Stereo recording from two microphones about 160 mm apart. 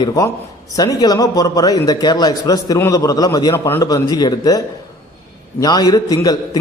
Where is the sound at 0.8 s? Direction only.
25° left (ahead or behind).